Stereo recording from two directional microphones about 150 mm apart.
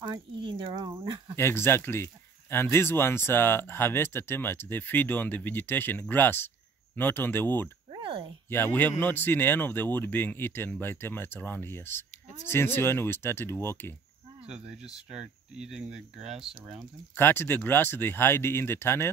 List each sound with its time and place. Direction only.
0.0 s a sound: 30° right (ahead or behind)
1.3 s speech: 15° left (ahead or behind)
7.9 s a sound: 35° right (ahead or behind)
8.5 s speech: 15° left (ahead or behind)
14.4 s speech: 5° right (ahead or behind)
17.1 s speech: 15° left (ahead or behind)